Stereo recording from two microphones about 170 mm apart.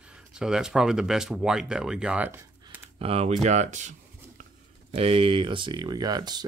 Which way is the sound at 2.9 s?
35° right (ahead or behind).